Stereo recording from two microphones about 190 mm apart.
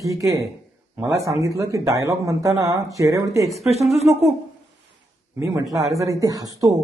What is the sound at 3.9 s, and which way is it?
Speech, 35° right (ahead or behind).